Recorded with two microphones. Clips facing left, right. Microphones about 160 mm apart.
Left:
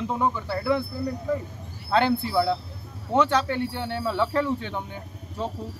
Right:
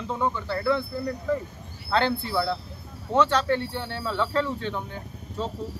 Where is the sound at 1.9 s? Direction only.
15° left (ahead or behind).